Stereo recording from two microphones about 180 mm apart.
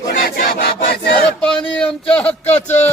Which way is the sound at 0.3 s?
55° left (ahead or behind).